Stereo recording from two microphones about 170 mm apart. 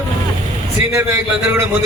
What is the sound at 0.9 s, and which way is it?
Speech, 15° right (ahead or behind).